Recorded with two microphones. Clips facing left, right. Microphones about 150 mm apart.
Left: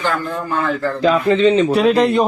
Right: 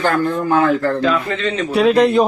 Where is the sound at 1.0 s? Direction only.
35° left (ahead or behind).